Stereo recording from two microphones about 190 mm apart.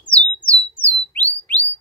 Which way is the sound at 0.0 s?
5° left (ahead or behind).